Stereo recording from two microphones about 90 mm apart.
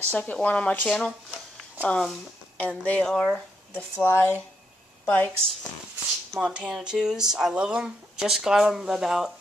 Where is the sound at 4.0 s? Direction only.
25° left (ahead or behind).